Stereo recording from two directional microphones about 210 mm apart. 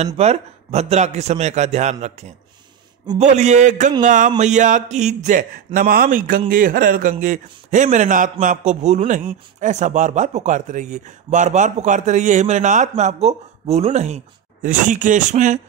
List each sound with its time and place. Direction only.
0.0 s a man's voice: 30° right (ahead or behind)